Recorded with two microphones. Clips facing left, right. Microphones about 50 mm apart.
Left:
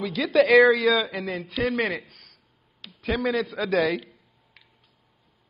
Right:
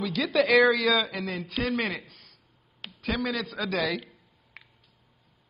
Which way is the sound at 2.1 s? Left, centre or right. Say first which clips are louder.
Left 1 dB; left.